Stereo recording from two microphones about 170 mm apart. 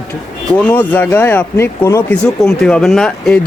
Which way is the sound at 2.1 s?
5° left (ahead or behind).